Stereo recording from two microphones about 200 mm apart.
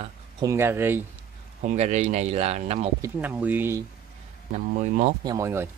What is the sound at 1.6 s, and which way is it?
Speech, 35° right (ahead or behind).